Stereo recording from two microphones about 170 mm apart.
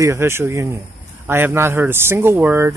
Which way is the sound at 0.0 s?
15° right (ahead or behind).